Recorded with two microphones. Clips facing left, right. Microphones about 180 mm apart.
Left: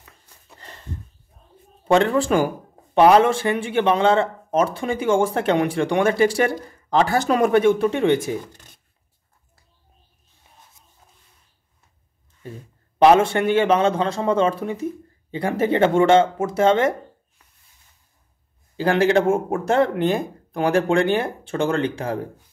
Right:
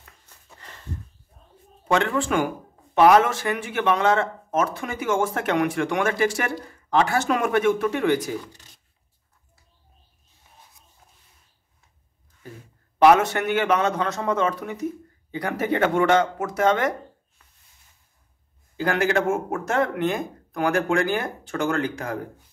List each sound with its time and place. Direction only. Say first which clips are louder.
1.9 s speech: left 5 dB; 35° left (ahead or behind)
8.5 s a sound: left 2 dB; 50° left (ahead or behind)
13.0 s speech: left 2 dB; 25° left (ahead or behind)
18.8 s speech: left 5 dB; 30° left (ahead or behind)